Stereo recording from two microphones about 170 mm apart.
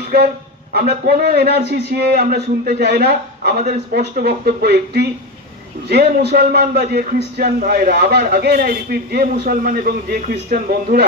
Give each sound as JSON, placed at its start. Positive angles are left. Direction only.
{"t": 0.7, "sound": "speech", "side_deg": -65}